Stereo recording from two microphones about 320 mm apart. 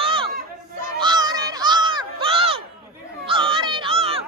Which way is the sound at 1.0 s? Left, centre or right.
Centre.